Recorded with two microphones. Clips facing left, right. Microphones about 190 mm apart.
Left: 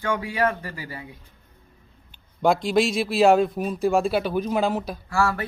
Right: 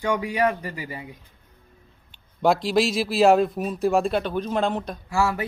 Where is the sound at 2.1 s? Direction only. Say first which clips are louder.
Even; centre (ahead or behind).